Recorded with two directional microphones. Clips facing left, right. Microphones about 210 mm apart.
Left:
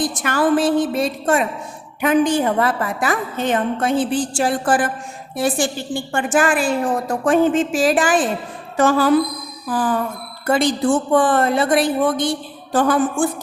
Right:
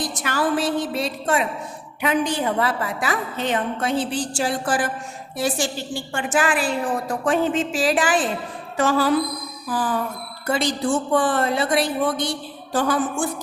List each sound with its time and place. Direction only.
0.0 s a woman's voice: 50° left (ahead or behind)